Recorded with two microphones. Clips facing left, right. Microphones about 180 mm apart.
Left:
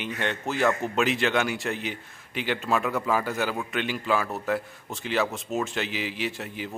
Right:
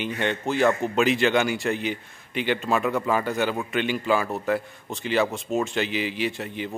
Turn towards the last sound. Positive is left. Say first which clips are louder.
# right 4 dB
turn(degrees=0)  # may be behind; listen again after turning